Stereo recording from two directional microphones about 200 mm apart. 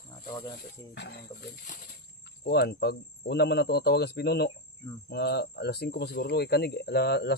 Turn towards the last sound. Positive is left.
turn(degrees=55)  # may be behind; listen again after turning